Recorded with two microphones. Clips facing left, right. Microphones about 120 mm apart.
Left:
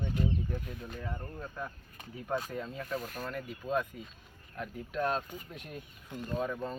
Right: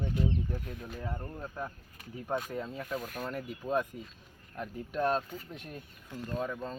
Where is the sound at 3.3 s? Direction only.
15° right (ahead or behind).